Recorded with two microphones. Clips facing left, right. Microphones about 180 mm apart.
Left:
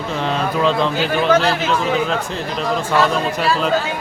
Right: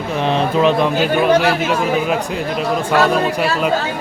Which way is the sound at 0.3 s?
20° right (ahead or behind).